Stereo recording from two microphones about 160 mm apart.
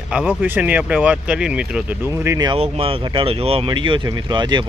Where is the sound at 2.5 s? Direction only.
35° right (ahead or behind).